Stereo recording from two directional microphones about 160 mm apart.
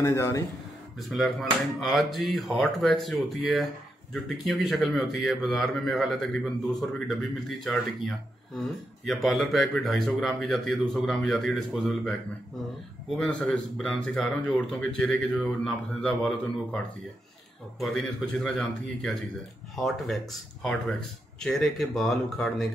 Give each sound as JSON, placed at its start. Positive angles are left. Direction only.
{"t": 0.0, "sound": "a man's voice", "side_deg": 15}
{"t": 0.9, "sound": "a man's voice", "side_deg": 0}
{"t": 13.2, "sound": "a man's voice", "side_deg": 5}